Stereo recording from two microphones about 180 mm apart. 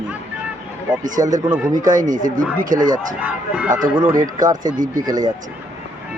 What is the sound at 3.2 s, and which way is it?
Speech, 10° right (ahead or behind).